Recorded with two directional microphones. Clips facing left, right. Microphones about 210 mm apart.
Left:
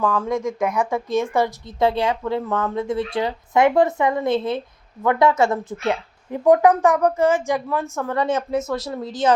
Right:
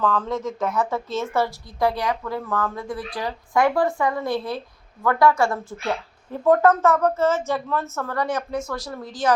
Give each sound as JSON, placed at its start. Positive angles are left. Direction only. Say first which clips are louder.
{"t": 0.0, "sound": "a woman's voice", "louder": "left 2 dB", "side_deg": 10}